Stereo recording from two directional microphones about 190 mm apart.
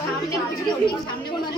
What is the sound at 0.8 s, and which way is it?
Speech, 25° left (ahead or behind).